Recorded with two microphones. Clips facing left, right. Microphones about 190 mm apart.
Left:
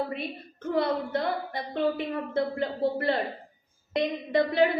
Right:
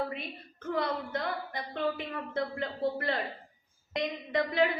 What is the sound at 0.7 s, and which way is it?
A woman's voice, 30° left (ahead or behind).